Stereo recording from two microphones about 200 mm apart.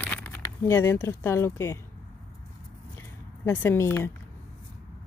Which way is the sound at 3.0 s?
10° left (ahead or behind).